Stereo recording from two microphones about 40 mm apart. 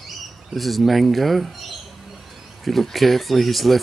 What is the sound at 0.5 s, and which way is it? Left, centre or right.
Speech, centre.